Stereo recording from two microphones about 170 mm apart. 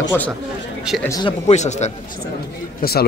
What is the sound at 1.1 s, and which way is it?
Speech, 25° left (ahead or behind).